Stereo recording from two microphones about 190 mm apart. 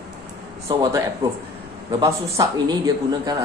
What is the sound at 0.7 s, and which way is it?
Speech, 25° right (ahead or behind).